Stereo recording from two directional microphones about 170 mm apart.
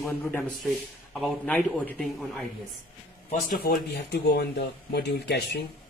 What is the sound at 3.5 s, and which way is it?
Speech, 70° left (ahead or behind).